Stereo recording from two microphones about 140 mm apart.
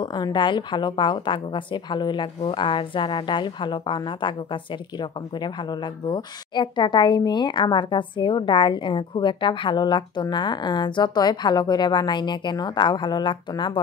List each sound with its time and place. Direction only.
0.0 s a woman's voice: 30° left (ahead or behind)